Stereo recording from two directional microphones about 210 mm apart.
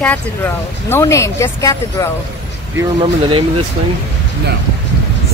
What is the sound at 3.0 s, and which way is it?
Speech, 25° right (ahead or behind).